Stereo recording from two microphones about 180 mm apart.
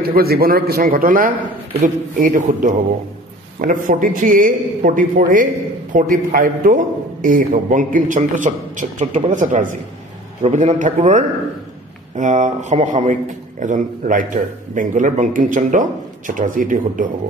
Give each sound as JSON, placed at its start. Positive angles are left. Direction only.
{"t": 0.0, "sound": "a man's voice", "side_deg": -60}